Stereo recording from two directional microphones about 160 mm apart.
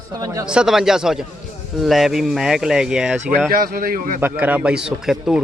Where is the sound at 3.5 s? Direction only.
65° right (ahead or behind).